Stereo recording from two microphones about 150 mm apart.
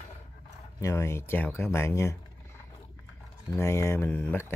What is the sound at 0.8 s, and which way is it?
Speech, 20° left (ahead or behind).